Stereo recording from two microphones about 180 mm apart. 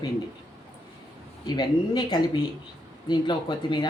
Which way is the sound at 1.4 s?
25° left (ahead or behind).